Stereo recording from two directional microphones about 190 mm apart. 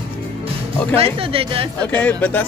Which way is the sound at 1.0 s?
30° right (ahead or behind).